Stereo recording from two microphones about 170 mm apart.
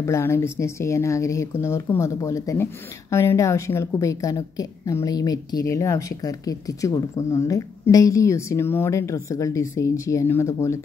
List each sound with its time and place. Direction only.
0.0 s speech: 15° left (ahead or behind)